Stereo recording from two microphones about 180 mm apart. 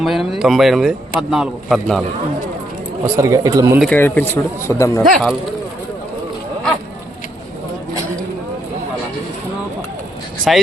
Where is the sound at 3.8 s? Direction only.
10° left (ahead or behind).